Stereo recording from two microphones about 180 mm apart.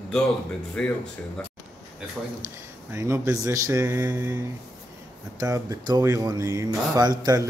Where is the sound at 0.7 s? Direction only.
5° left (ahead or behind).